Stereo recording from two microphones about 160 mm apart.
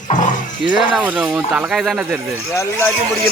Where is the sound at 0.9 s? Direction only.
5° right (ahead or behind).